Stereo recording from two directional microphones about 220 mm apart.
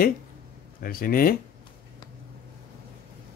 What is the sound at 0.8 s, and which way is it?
Speech, 40° left (ahead or behind).